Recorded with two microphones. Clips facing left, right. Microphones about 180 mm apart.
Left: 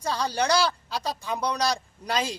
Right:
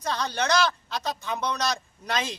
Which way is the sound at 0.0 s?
10° left (ahead or behind).